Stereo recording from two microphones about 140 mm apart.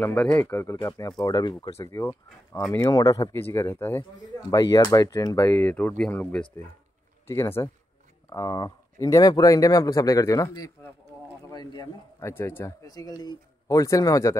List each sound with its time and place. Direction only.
0.0 s speech: 10° left (ahead or behind); by 1.7 s 30° left (ahead or behind)
1.8 s speech: 20° left (ahead or behind)
4.5 s speech: 25° left (ahead or behind)